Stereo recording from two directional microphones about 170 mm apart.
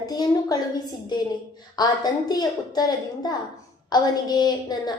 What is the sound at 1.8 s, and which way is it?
A woman's voice, 25° left (ahead or behind).